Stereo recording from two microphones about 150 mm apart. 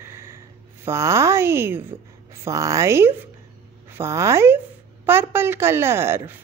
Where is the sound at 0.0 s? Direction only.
15° right (ahead or behind).